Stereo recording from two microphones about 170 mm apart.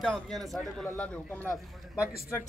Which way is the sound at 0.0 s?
Centre (ahead or behind).